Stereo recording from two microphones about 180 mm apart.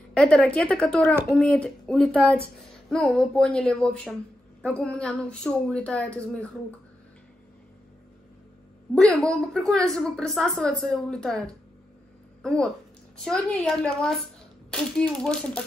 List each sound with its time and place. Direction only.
0.1 s a woman's voice: 5° left (ahead or behind)
8.9 s a woman's voice: 5° left (ahead or behind)